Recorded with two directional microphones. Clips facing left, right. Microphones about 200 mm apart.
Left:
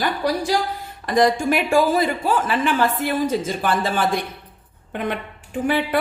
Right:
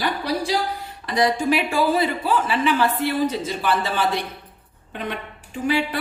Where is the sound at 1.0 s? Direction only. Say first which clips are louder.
Left 3 dB; 50° left (ahead or behind).